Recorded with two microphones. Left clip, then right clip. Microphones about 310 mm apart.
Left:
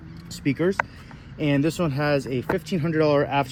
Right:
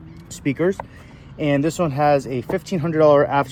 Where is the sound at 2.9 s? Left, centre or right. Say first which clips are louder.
Right 7 dB; right.